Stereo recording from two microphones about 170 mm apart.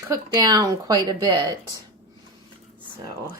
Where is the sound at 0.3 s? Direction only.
25° right (ahead or behind).